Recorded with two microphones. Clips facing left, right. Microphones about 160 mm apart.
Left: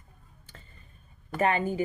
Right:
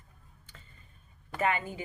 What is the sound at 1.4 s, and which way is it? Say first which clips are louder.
Speech: left 5 dB; 30° left (ahead or behind).